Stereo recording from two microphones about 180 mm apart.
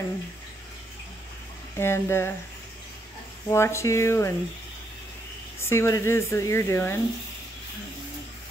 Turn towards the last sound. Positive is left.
turn(degrees=15)  # may be behind; listen again after turning